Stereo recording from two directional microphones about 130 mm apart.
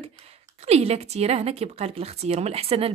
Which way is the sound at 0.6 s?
55° right (ahead or behind).